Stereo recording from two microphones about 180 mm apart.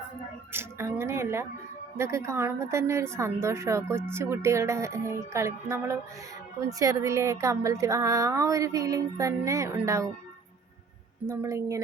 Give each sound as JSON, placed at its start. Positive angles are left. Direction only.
{"t": 0.5, "sound": "a sound", "side_deg": -15}
{"t": 2.0, "sound": "speech", "side_deg": -15}
{"t": 11.3, "sound": "speech", "side_deg": -15}